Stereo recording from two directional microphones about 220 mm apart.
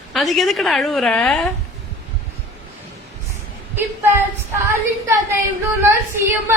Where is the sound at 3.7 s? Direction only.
10° right (ahead or behind).